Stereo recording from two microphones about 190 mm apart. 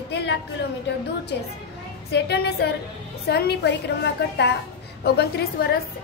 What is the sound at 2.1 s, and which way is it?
A woman's voice, 60° left (ahead or behind).